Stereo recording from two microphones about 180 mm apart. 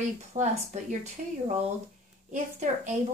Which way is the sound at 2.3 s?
40° right (ahead or behind).